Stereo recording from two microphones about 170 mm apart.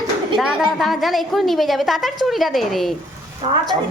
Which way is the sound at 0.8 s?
Centre (ahead or behind).